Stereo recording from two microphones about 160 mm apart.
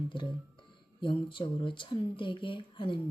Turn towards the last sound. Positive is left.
turn(degrees=30)  # may be behind; listen again after turning